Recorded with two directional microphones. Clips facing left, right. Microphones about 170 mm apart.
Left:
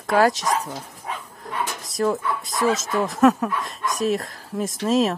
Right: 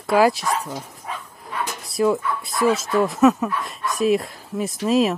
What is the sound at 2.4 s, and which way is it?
Speech, 45° left (ahead or behind).